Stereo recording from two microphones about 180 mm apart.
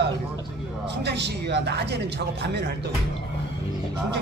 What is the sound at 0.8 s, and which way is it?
Speech, 70° right (ahead or behind).